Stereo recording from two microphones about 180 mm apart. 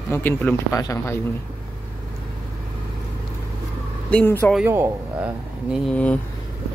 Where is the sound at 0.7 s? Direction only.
20° left (ahead or behind).